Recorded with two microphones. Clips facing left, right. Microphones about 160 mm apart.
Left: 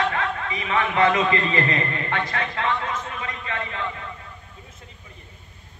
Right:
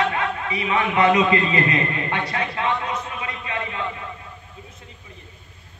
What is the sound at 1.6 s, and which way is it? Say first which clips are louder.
Speech: right 2 dB; 35° left (ahead or behind).